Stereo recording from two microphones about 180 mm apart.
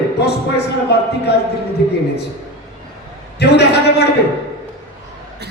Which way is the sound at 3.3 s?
65° left (ahead or behind).